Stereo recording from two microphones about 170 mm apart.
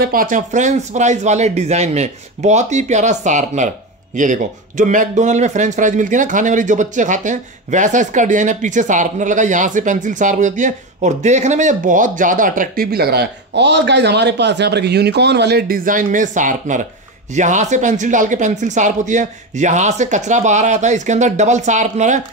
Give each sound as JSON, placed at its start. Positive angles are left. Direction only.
{"t": 0.0, "sound": "a man's voice", "side_deg": -55}